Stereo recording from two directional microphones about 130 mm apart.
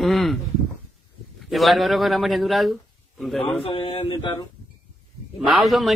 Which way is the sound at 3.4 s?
45° left (ahead or behind).